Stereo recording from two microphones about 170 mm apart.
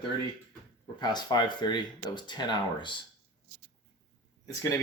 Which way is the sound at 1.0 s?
25° left (ahead or behind).